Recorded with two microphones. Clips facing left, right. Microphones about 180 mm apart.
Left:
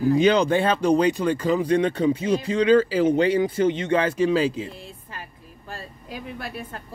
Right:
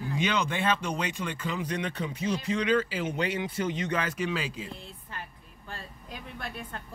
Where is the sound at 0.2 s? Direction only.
35° left (ahead or behind).